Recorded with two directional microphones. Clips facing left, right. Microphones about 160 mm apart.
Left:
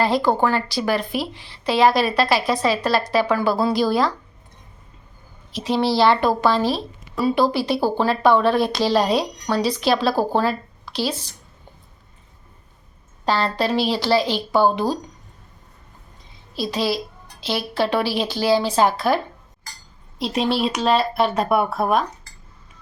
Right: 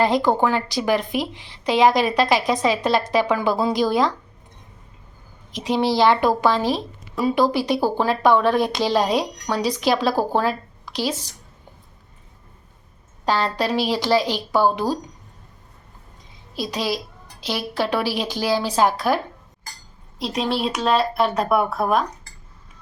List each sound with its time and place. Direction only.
0.0 s speech: 15° right (ahead or behind)
5.5 s speech: 15° right (ahead or behind)
13.2 s speech: 15° right (ahead or behind)
16.6 s speech: 15° right (ahead or behind)
20.1 s speech: centre (ahead or behind)